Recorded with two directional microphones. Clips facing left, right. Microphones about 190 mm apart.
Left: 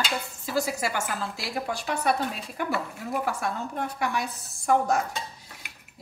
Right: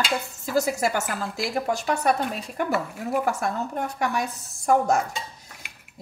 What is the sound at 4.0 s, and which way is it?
A woman's voice, 45° right (ahead or behind).